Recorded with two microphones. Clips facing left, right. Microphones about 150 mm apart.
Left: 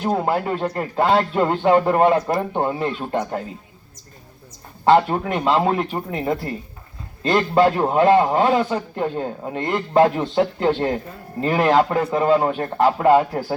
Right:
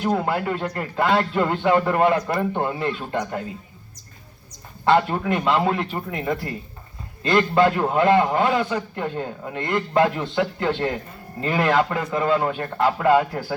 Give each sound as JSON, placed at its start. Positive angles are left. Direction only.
{"t": 0.0, "sound": "a man's voice", "side_deg": 25}
{"t": 4.9, "sound": "a man's voice", "side_deg": 30}